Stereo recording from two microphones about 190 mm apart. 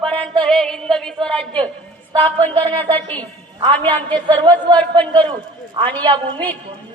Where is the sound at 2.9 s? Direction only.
5° left (ahead or behind).